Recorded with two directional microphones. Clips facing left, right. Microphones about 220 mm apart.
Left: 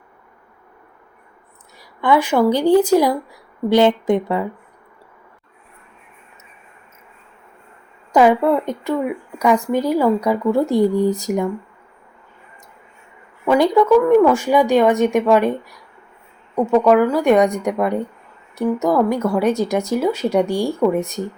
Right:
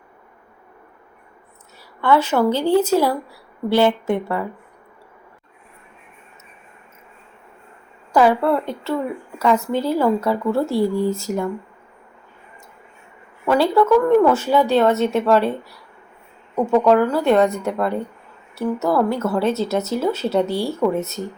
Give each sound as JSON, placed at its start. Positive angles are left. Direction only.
{"t": 1.8, "sound": "speech", "side_deg": 15}
{"t": 8.1, "sound": "speech", "side_deg": 20}
{"t": 13.4, "sound": "speech", "side_deg": 10}
{"t": 16.8, "sound": "speech", "side_deg": 10}